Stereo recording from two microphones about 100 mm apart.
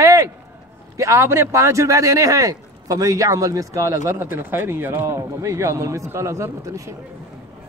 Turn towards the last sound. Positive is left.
turn(degrees=-30)  # may be behind; listen again after turning